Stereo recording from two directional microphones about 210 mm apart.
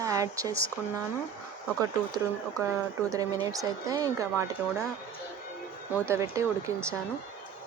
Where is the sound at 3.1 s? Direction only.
15° right (ahead or behind).